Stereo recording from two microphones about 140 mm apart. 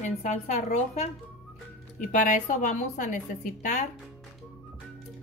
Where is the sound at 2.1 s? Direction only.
65° left (ahead or behind).